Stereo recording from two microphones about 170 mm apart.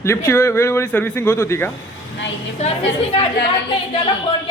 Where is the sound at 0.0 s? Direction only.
15° left (ahead or behind).